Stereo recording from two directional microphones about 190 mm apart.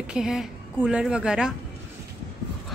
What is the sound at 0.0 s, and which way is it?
A woman's voice, 5° right (ahead or behind).